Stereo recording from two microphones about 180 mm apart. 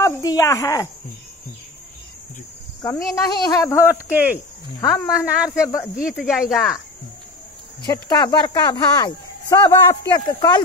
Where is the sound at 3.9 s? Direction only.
10° right (ahead or behind).